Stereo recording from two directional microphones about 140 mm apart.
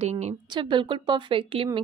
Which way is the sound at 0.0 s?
50° right (ahead or behind).